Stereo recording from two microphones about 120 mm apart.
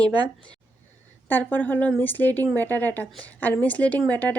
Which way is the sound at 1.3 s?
15° left (ahead or behind).